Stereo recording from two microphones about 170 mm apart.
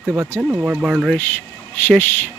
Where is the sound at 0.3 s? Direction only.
10° right (ahead or behind).